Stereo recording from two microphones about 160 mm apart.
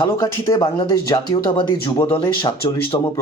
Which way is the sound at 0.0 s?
25° left (ahead or behind).